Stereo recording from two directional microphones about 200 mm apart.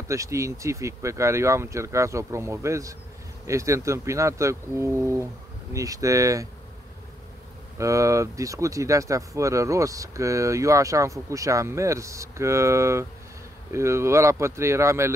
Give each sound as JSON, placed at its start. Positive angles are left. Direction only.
{"t": 0.1, "sound": "speech", "side_deg": -15}
{"t": 7.7, "sound": "speech", "side_deg": -15}